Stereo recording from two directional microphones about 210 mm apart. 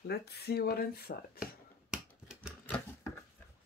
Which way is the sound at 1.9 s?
5° right (ahead or behind).